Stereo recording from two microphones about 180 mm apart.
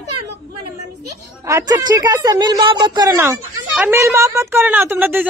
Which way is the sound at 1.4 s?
20° right (ahead or behind).